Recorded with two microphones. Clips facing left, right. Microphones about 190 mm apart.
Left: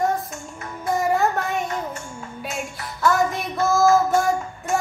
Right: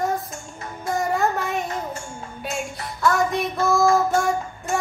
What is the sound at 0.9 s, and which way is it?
Music, centre (ahead or behind).